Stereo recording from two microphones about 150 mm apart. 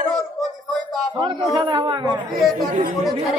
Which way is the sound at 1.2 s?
30° right (ahead or behind).